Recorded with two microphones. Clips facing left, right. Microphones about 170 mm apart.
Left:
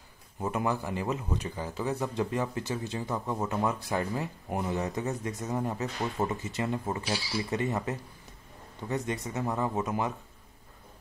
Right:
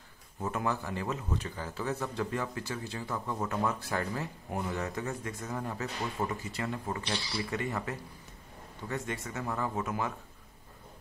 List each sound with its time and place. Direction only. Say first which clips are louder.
0.4 s speech: left 3 dB; 15° left (ahead or behind)
7.1 s speech: left 3 dB; 5° left (ahead or behind)
7.5 s speech: left 5 dB; 20° left (ahead or behind)